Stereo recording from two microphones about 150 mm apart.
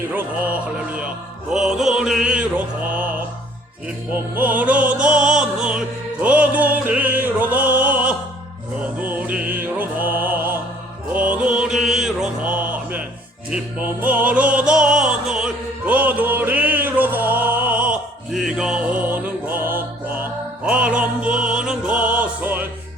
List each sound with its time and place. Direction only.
0.1 s music: 10° right (ahead or behind)
4.1 s music: 10° right (ahead or behind)